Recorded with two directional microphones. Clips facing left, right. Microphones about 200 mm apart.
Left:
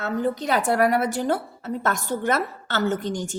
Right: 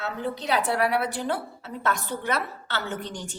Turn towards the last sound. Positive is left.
turn(degrees=45)  # may be behind; listen again after turning